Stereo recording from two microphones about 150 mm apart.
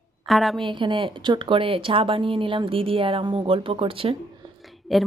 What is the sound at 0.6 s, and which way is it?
Speech, 35° right (ahead or behind).